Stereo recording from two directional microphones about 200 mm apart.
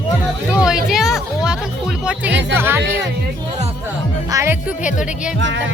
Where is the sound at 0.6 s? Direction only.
5° right (ahead or behind).